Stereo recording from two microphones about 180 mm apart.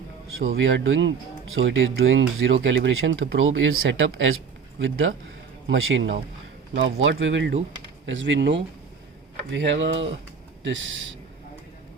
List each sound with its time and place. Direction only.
0.3 s speech: 90° right